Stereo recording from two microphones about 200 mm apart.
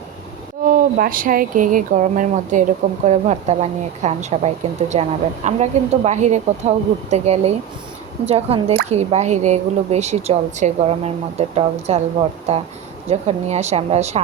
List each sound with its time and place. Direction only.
0.6 s a woman's voice: 45° right (ahead or behind)